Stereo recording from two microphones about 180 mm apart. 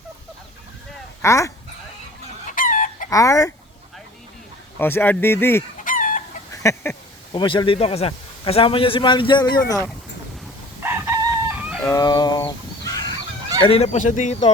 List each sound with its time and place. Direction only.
1.2 s speech: 15° left (ahead or behind)
2.5 s chicken: 45° left (ahead or behind)
3.1 s speech: 20° left (ahead or behind)
4.8 s speech: 10° left (ahead or behind)
5.8 s chicken: 50° left (ahead or behind)
6.5 s a sound: 15° left (ahead or behind)
7.3 s a man's voice: 25° left (ahead or behind)
10.8 s chicken: 15° right (ahead or behind)
11.9 s livestock: 20° left (ahead or behind)
13.6 s speech: 35° left (ahead or behind)